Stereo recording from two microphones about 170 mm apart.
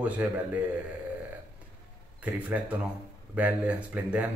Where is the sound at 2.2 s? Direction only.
10° right (ahead or behind).